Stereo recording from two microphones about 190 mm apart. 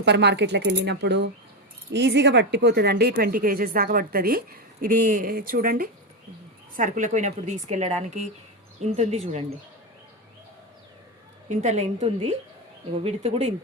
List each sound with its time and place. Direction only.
0.0 s a woman's voice: 65° right (ahead or behind); by 9.4 s 35° right (ahead or behind)
11.4 s speech: 35° right (ahead or behind)